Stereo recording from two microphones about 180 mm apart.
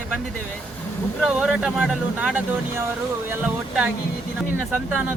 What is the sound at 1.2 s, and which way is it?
Speech, 5° right (ahead or behind).